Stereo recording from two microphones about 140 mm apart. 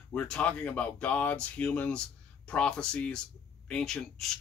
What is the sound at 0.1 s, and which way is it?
Speech, 5° left (ahead or behind).